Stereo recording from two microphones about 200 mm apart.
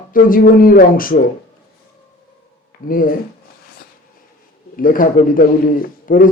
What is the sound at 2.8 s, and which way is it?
Speech, 45° left (ahead or behind).